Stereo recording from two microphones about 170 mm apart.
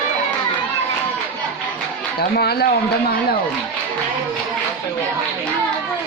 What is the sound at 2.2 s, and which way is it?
Speech, 65° left (ahead or behind).